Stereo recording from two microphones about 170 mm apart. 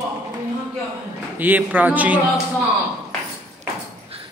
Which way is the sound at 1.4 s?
10° right (ahead or behind).